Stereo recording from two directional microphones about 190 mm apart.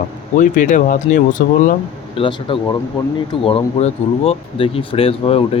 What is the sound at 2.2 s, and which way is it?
Speech, 30° left (ahead or behind).